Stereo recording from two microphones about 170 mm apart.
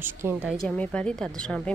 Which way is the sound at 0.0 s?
10° right (ahead or behind).